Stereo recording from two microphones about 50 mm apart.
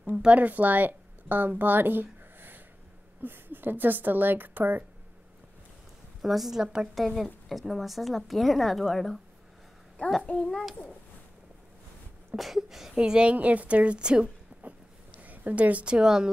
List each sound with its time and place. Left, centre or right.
0.2 s a woman's voice: right
6.2 s a woman's voice: centre
7.4 s a woman's voice: centre
10.2 s a child's voice: left
10.5 s a woman's voice: centre
12.4 s a woman's voice: centre
12.9 s a woman's voice: centre
13.3 s a woman's voice: right
14.5 s a sound: right
15.1 s a woman's voice: right; by 16.3 s centre